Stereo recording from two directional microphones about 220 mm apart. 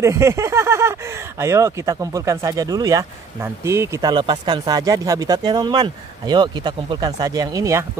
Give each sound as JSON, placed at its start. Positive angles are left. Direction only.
{"t": 0.0, "sound": "speech", "side_deg": -15}